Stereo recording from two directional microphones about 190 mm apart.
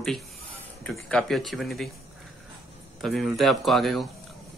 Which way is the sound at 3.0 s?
Centre (ahead or behind).